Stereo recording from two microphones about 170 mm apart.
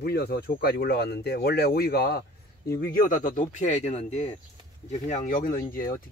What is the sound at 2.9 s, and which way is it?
Speech, 55° left (ahead or behind).